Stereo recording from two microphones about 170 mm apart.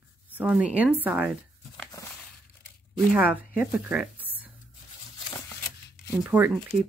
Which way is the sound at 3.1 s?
10° right (ahead or behind).